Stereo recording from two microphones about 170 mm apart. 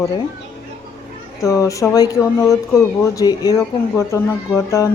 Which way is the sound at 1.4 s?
20° left (ahead or behind).